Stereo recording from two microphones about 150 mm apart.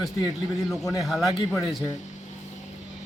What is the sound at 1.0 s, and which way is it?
Speech, centre (ahead or behind).